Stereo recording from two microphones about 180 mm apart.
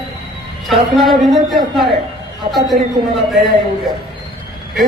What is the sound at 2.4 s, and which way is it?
Speech, 35° right (ahead or behind).